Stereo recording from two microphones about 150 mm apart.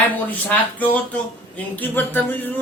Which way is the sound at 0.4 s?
10° left (ahead or behind).